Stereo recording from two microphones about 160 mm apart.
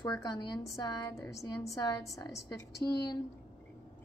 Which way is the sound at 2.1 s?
20° left (ahead or behind).